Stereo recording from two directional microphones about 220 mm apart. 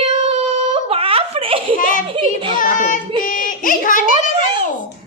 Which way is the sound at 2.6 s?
35° left (ahead or behind).